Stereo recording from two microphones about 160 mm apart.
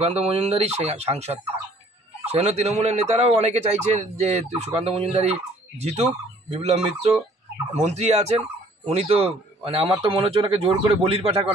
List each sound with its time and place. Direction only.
0.0 s speech: 40° right (ahead or behind)